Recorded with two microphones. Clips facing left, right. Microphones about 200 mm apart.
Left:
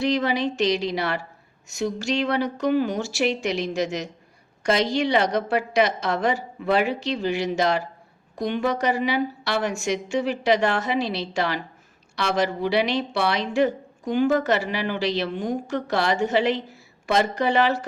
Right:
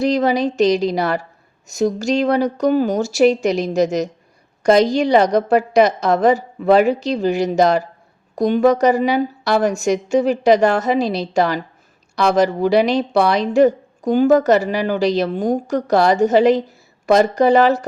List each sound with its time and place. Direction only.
0.0 s a woman's voice: 40° right (ahead or behind)